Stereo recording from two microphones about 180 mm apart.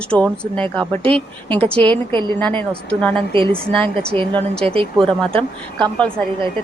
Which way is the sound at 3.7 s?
5° left (ahead or behind).